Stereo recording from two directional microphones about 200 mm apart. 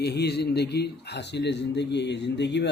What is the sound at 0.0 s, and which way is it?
Speech, 55° left (ahead or behind).